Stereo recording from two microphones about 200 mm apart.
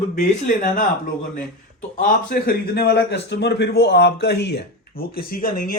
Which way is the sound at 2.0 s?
45° left (ahead or behind).